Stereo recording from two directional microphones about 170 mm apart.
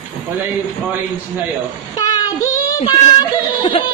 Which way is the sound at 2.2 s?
25° left (ahead or behind).